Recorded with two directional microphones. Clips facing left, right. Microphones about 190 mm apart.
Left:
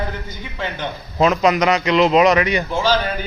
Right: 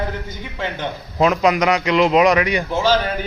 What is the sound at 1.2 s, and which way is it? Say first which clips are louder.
A man's voice: even; 10° right (ahead or behind).